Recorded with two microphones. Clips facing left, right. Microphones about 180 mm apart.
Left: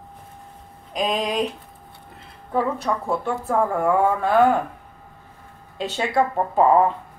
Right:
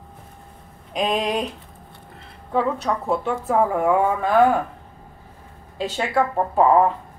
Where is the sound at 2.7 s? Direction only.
Centre (ahead or behind).